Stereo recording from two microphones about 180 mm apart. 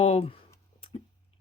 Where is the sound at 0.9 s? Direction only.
30° left (ahead or behind).